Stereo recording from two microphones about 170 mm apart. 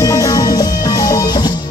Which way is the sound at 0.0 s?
20° left (ahead or behind).